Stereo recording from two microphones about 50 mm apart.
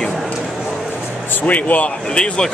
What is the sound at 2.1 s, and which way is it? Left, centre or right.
Speech, centre.